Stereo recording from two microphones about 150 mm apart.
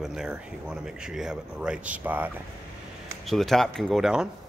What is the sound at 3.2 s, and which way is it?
Speech, centre (ahead or behind).